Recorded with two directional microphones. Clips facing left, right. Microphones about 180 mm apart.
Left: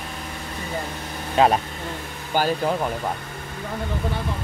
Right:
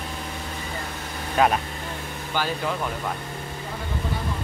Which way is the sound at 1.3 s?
25° left (ahead or behind).